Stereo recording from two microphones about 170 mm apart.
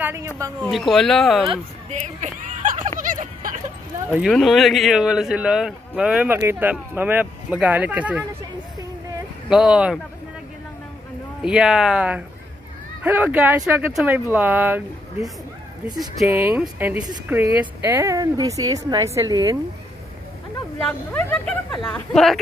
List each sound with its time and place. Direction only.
0.0 s a sound: 15° right (ahead or behind)
0.6 s a man's voice: centre (ahead or behind)
1.5 s speech: 40° right (ahead or behind)
3.0 s a sound: 50° right (ahead or behind)
4.1 s a man's voice: centre (ahead or behind)
9.5 s a man's voice: 5° right (ahead or behind)
11.4 s a man's voice: 5° right (ahead or behind)
16.3 s speech: 10° right (ahead or behind)
20.8 s a man's voice: 10° left (ahead or behind)